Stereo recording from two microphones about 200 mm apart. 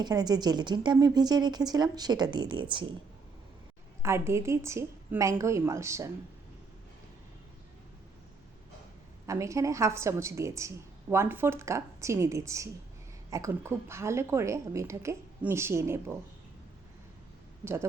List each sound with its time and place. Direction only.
0.0 s a woman's voice: 20° right (ahead or behind)
4.0 s a woman's voice: 15° right (ahead or behind)
9.2 s a woman's voice: 15° right (ahead or behind)